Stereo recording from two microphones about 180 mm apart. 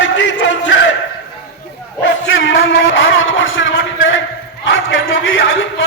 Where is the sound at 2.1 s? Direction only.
90° left.